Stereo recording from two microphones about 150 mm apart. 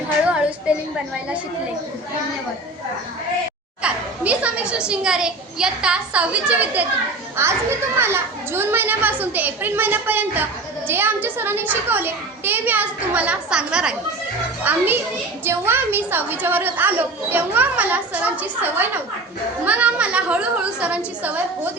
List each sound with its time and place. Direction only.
3.8 s a woman's voice: 10° right (ahead or behind)